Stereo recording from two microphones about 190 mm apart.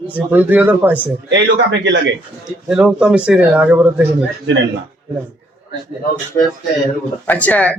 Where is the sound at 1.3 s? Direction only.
70° right (ahead or behind).